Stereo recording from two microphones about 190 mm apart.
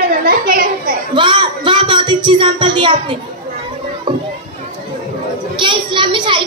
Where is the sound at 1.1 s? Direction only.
25° right (ahead or behind).